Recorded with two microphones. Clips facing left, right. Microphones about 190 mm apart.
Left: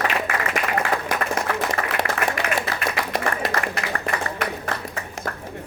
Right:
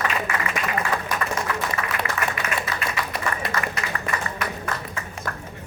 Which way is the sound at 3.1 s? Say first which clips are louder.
Left 3 dB; 55° left (ahead or behind).